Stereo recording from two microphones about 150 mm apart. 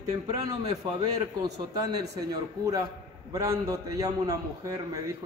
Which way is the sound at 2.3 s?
25° right (ahead or behind).